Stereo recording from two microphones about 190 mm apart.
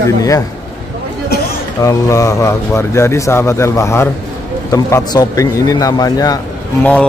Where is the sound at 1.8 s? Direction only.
15° left (ahead or behind).